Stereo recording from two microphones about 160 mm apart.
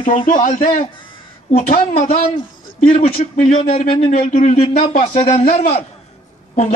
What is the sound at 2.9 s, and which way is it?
A man's voice, 55° left (ahead or behind).